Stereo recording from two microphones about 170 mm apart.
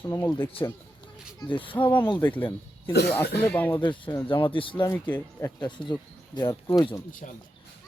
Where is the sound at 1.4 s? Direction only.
30° left (ahead or behind).